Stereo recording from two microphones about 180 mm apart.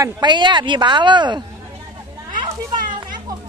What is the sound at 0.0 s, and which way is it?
A woman's voice, 25° right (ahead or behind).